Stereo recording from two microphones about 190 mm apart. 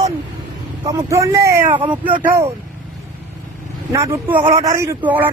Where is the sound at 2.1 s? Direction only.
45° right (ahead or behind).